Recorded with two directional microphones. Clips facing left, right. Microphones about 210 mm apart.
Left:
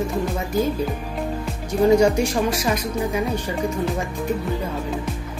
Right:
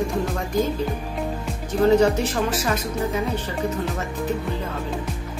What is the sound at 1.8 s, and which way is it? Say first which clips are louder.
A woman's voice: left 1 dB; 10° left (ahead or behind).